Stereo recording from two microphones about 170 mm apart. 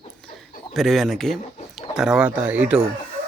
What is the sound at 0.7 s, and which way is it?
Speech, centre (ahead or behind).